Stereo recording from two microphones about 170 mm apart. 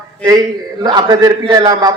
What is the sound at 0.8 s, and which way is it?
A man's voice, 25° right (ahead or behind).